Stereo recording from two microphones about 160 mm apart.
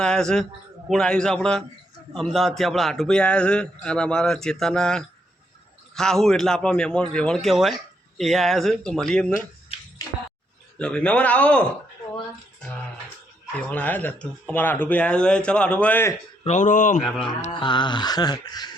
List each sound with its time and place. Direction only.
0.0 s a man's voice: 5° left (ahead or behind)
10.8 s speech: 5° left (ahead or behind)
13.6 s speech: 10° left (ahead or behind)
16.4 s speech: 45° left (ahead or behind)
17.2 s speech: 35° left (ahead or behind)